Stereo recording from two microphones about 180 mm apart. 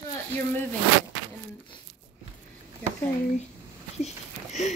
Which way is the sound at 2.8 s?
10° left (ahead or behind).